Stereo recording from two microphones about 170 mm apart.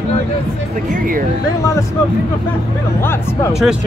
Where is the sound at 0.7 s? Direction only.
50° right (ahead or behind).